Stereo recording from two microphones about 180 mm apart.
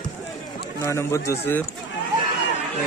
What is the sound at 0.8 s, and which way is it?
Speech, 15° left (ahead or behind).